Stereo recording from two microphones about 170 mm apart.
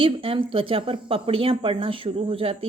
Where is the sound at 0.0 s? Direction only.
30° right (ahead or behind).